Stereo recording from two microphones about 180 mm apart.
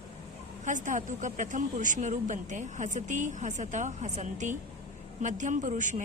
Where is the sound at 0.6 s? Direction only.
45° right (ahead or behind).